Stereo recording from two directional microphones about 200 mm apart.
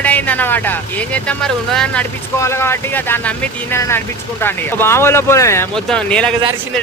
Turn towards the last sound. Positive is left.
turn(degrees=5)  # may be behind; listen again after turning